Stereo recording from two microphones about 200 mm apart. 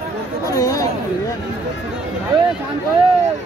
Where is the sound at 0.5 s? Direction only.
15° left (ahead or behind).